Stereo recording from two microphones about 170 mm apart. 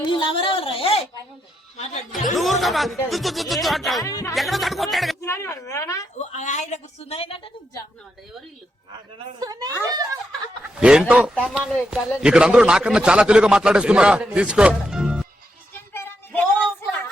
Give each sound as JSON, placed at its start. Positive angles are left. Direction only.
{"t": 0.0, "sound": "a sound", "side_deg": 30}
{"t": 1.7, "sound": "speech", "side_deg": 40}
{"t": 2.3, "sound": "a man's voice", "side_deg": 0}
{"t": 4.0, "sound": "speech", "side_deg": 20}
{"t": 4.4, "sound": "a man's voice", "side_deg": 0}
{"t": 5.2, "sound": "speech", "side_deg": 15}
{"t": 6.3, "sound": "a woman's voice", "side_deg": 45}
{"t": 9.4, "sound": "a child's voice", "side_deg": -20}
{"t": 10.6, "sound": "snicker", "side_deg": -5}
{"t": 11.1, "sound": "a man's voice", "side_deg": -5}
{"t": 15.9, "sound": "a sound", "side_deg": 10}